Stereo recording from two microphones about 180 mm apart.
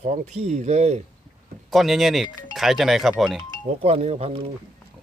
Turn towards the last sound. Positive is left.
turn(degrees=-35)  # may be behind; listen again after turning